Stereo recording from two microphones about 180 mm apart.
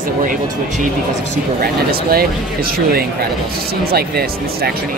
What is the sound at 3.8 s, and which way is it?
Speech, 60° right (ahead or behind).